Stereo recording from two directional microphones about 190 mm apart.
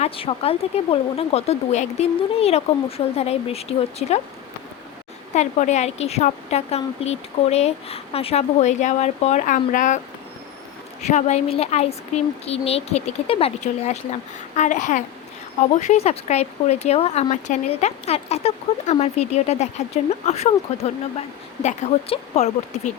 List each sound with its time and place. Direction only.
0.0 s speech: 30° left (ahead or behind)
5.3 s speech: 35° left (ahead or behind)
11.0 s speech: 35° left (ahead or behind)